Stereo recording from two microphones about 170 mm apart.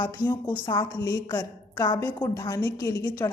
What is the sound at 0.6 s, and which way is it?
Speech, 25° left (ahead or behind).